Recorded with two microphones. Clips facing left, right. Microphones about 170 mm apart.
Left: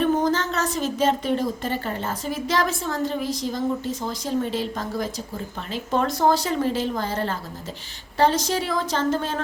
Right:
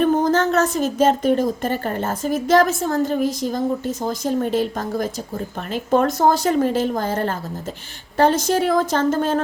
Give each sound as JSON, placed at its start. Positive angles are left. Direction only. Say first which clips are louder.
{"t": 0.0, "sound": "a woman's voice", "louder": "right 4 dB", "side_deg": -50}